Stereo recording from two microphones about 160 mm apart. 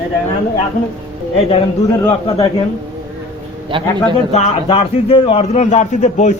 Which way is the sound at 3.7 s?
30° right (ahead or behind).